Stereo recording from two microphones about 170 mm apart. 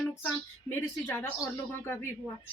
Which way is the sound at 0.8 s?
15° left (ahead or behind).